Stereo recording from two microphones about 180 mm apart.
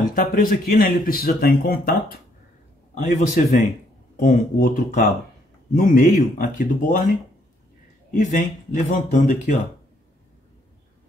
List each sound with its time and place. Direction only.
0.0 s speech: 50° left (ahead or behind)
2.9 s speech: 40° left (ahead or behind)
8.1 s speech: 45° left (ahead or behind)